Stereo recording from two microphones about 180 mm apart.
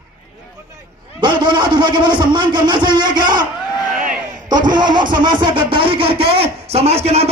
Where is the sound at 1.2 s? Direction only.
25° right (ahead or behind).